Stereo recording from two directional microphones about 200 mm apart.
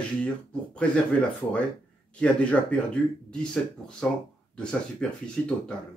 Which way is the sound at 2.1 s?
5° left (ahead or behind).